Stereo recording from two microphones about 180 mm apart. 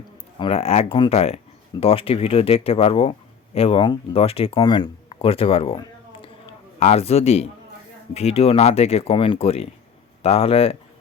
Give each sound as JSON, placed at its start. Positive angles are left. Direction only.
{"t": 0.3, "sound": "speech", "side_deg": 30}